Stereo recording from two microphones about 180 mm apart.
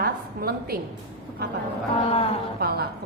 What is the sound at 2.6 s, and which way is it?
Speech, 60° right (ahead or behind).